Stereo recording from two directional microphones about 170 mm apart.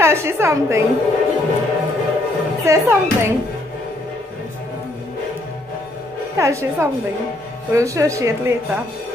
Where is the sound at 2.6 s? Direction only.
15° right (ahead or behind).